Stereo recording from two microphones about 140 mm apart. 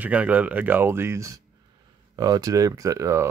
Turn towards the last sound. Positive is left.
turn(degrees=-20)  # may be behind; listen again after turning